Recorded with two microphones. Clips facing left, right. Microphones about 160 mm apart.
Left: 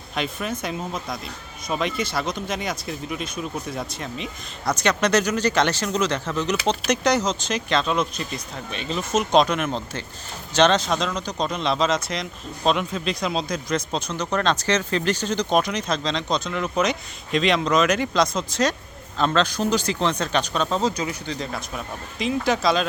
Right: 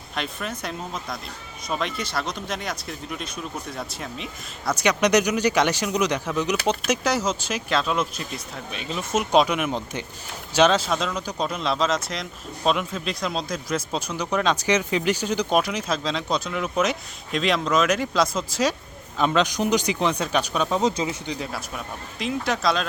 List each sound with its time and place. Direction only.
0.2 s speech: centre (ahead or behind)
20.9 s speech: 25° right (ahead or behind)
21.3 s speech: 5° right (ahead or behind)